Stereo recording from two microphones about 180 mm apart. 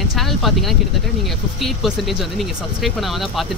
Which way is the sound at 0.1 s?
Centre (ahead or behind).